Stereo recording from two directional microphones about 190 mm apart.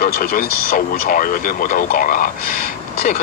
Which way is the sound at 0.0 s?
50° left (ahead or behind).